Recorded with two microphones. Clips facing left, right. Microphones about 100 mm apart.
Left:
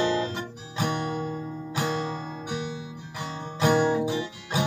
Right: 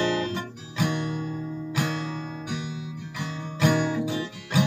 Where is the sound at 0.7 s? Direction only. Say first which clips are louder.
Right 1 dB; 40° left (ahead or behind).